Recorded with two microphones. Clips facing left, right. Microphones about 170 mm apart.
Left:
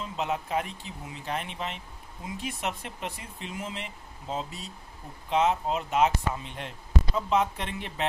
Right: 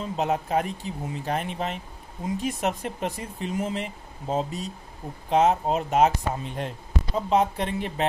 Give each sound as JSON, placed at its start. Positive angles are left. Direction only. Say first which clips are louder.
{"t": 0.0, "sound": "speech", "louder": "right 5 dB", "side_deg": -45}